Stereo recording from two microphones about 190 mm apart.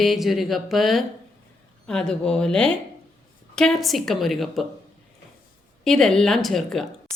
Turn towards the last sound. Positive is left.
turn(degrees=0)  # may be behind; listen again after turning